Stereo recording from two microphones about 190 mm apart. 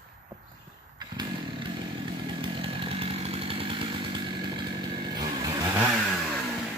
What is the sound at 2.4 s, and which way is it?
Chainsaw, 30° right (ahead or behind).